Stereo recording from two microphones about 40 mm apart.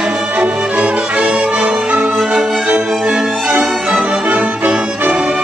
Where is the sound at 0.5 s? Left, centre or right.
Right.